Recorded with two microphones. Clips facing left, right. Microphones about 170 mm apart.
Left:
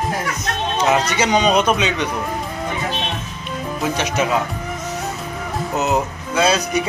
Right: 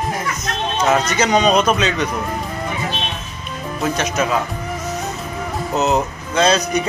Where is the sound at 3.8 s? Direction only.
15° left (ahead or behind).